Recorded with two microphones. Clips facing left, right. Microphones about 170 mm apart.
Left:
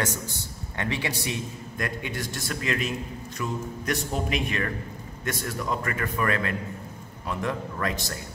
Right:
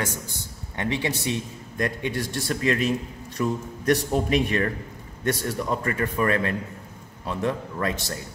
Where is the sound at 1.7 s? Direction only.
35° right (ahead or behind).